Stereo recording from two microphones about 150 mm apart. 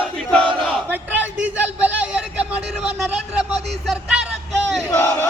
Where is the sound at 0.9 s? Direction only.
10° right (ahead or behind).